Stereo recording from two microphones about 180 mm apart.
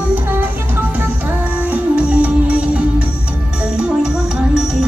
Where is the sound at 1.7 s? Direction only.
5° right (ahead or behind).